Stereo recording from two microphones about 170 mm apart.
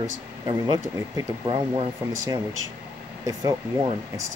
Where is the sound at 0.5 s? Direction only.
25° right (ahead or behind).